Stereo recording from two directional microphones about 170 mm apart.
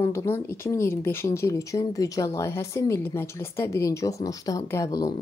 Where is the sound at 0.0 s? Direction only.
15° left (ahead or behind).